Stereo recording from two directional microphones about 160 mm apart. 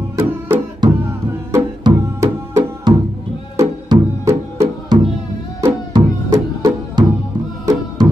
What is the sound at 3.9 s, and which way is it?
Music, 20° right (ahead or behind).